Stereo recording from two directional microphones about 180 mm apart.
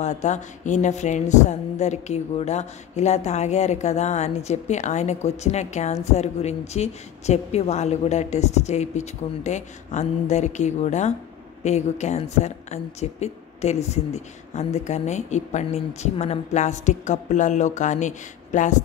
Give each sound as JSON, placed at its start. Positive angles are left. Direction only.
{"t": 0.0, "sound": "speech", "side_deg": 40}